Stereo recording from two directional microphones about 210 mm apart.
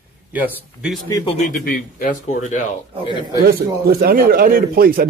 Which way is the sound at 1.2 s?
35° left (ahead or behind).